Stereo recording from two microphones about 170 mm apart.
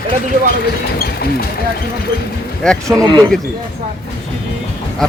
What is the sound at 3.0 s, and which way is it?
Speech, 25° right (ahead or behind).